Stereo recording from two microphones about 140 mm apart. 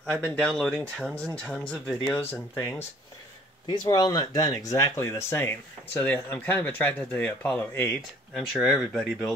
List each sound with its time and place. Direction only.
0.2 s speech: 5° left (ahead or behind)
8.4 s speech: 5° right (ahead or behind)